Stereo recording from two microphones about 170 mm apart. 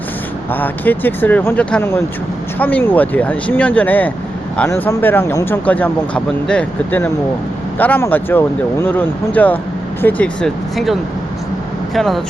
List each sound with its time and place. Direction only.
0.5 s speech: 10° left (ahead or behind)
11.9 s speech: centre (ahead or behind)